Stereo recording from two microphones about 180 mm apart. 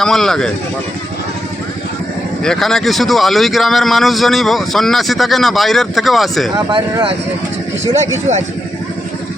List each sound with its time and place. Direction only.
0.0 s a man's voice: centre (ahead or behind)
2.4 s a man's voice: 5° left (ahead or behind)
6.7 s speech: 25° right (ahead or behind)